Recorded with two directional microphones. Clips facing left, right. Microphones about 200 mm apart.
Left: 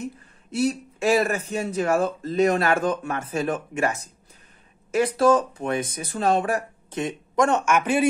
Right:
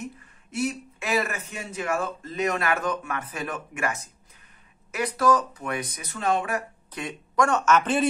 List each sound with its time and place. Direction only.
0.5 s speech: 35° left (ahead or behind); by 8.1 s 10° left (ahead or behind)